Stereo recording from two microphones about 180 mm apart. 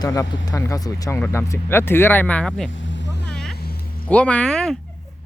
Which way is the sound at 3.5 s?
60° left (ahead or behind).